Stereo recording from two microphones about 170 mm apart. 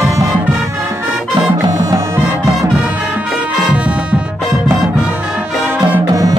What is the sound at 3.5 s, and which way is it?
Music, 5° right (ahead or behind).